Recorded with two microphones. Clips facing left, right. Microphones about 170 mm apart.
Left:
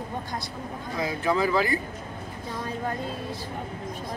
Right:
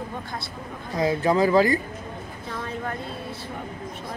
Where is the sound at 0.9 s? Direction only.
35° right (ahead or behind).